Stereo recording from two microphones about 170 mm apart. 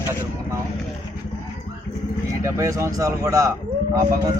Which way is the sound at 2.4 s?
15° right (ahead or behind).